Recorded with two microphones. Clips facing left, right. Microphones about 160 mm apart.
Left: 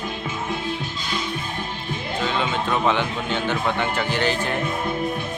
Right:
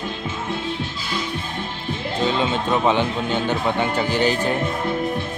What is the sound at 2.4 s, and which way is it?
Speech, 20° right (ahead or behind).